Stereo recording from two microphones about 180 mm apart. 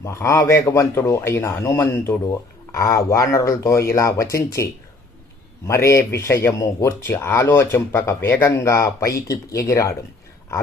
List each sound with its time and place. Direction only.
0.0 s speech: 15° left (ahead or behind)